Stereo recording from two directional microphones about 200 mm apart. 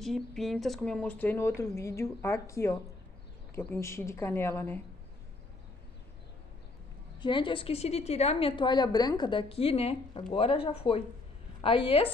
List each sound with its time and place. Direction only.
0.0 s speech: centre (ahead or behind)
7.2 s a woman's voice: 25° left (ahead or behind)